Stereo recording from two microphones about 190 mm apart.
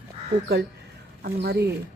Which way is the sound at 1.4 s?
60° right (ahead or behind).